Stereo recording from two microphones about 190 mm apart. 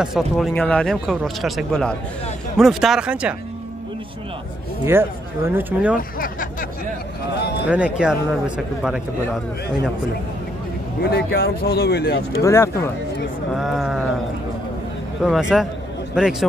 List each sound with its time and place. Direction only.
0.0 s speech: centre (ahead or behind)
4.8 s speech: 10° right (ahead or behind)
5.9 s speech: 50° left (ahead or behind)
7.3 s speech: 60° left (ahead or behind)
7.6 s speech: 5° right (ahead or behind)
11.1 s speech: 55° left (ahead or behind)
12.4 s speech: 15° left (ahead or behind)
13.6 s speech: centre (ahead or behind)
15.2 s speech: 5° right (ahead or behind)